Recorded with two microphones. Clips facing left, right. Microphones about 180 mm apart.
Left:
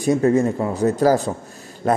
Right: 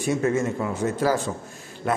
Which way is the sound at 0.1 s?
35° left (ahead or behind).